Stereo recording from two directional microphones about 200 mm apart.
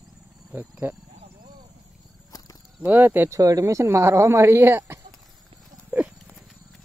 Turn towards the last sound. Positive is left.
turn(degrees=-5)  # may be behind; listen again after turning